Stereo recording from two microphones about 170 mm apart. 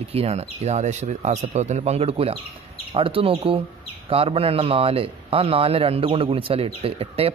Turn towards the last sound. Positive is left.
turn(degrees=-35)  # may be behind; listen again after turning